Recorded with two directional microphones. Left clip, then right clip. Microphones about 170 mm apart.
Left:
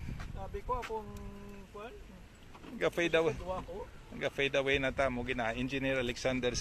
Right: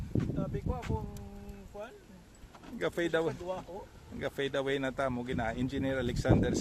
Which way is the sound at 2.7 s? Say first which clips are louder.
Left 1 dB; 35° right (ahead or behind).